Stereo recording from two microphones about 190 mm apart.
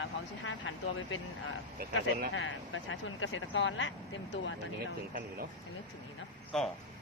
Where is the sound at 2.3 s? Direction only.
90° left.